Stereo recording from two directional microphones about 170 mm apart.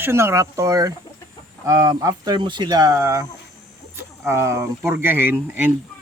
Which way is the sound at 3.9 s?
15° right (ahead or behind).